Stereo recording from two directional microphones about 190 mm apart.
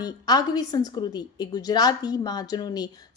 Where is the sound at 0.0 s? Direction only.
20° left (ahead or behind).